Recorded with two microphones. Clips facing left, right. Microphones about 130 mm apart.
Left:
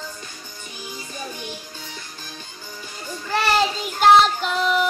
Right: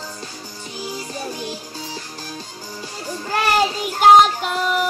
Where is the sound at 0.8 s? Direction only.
35° right (ahead or behind).